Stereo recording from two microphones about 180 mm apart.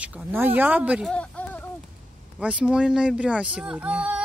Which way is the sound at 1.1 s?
5° left (ahead or behind).